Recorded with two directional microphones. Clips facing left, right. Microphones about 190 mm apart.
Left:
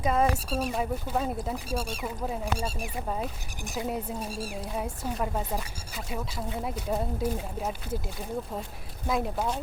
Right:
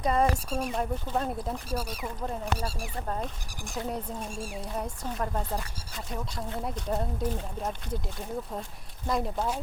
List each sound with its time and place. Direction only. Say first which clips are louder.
0.0 s speech: even; centre (ahead or behind)
1.7 s speech: left 2 dB; 25° left (ahead or behind)
2.0 s speech: left 2 dB; 5° left (ahead or behind)
3.8 s speech: left 2 dB; 5° left (ahead or behind)
4.3 s speech: left 2 dB; 40° left (ahead or behind)
4.7 s speech: left 2 dB; 5° left (ahead or behind)
9.0 s speech: left 1 dB; 5° left (ahead or behind)